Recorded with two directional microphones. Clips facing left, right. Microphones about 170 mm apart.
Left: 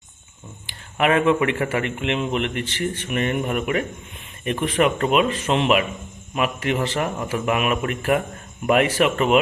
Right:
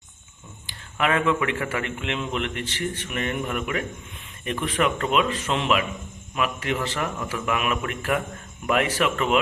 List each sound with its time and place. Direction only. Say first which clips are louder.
0.7 s a man's voice: left 4 dB; 20° left (ahead or behind)
1.8 s a man's voice: left 5 dB; 20° left (ahead or behind)